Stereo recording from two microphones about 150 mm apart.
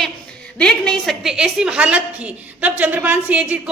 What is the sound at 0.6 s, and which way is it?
A woman's voice, 5° left (ahead or behind).